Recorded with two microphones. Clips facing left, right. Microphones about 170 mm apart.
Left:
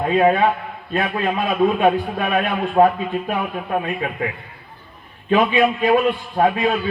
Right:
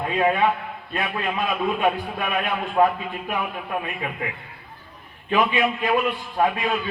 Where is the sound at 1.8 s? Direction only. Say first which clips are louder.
Left 6 dB; 45° left (ahead or behind).